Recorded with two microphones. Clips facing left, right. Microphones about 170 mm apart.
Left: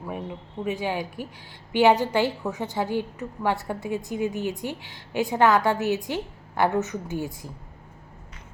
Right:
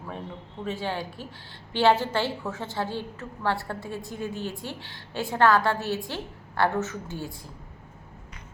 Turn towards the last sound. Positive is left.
turn(degrees=15)  # may be behind; listen again after turning